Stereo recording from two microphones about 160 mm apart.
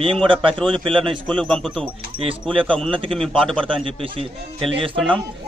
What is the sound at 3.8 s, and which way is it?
A man's voice, 35° right (ahead or behind).